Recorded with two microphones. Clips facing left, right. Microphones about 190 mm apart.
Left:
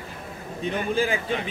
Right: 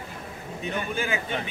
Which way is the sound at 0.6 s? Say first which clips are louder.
Left 5 dB; 30° left (ahead or behind).